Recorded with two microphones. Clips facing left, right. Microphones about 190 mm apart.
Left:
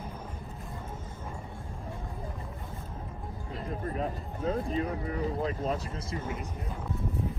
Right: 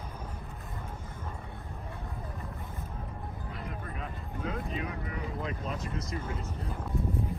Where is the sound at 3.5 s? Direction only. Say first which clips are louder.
Left 9 dB; 35° left (ahead or behind).